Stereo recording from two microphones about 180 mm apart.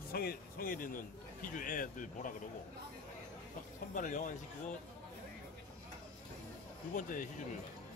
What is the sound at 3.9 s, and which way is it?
Speech, 45° left (ahead or behind).